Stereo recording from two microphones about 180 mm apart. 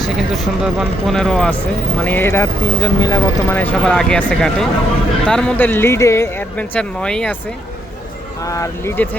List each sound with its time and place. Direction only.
0.0 s speech: centre (ahead or behind)
8.4 s speech: 20° left (ahead or behind)